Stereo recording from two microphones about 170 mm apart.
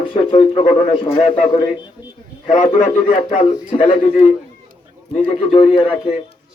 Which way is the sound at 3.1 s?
40° left (ahead or behind).